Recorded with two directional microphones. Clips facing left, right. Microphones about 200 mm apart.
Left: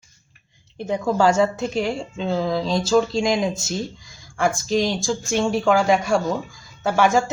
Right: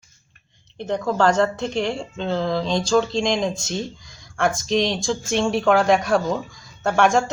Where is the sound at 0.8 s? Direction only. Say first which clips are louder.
Left 1 dB; 10° left (ahead or behind).